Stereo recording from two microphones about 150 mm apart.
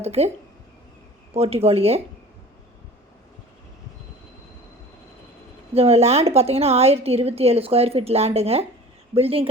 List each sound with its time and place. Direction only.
0.0 s a woman's voice: 45° right (ahead or behind)
1.3 s speech: 40° right (ahead or behind)
5.7 s a woman's voice: 40° right (ahead or behind)